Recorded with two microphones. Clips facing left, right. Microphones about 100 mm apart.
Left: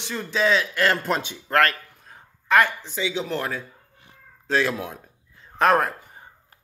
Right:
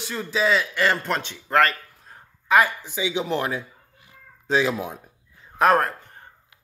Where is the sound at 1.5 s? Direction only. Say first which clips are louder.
Right 1 dB; centre (ahead or behind).